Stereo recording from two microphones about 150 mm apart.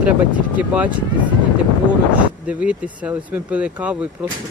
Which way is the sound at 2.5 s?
10° right (ahead or behind).